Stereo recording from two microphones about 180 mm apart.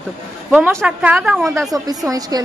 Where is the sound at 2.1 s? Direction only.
20° right (ahead or behind).